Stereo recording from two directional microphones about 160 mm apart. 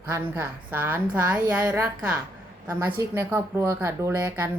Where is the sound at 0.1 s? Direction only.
15° right (ahead or behind).